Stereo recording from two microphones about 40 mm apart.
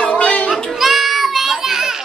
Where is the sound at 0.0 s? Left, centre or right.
Left.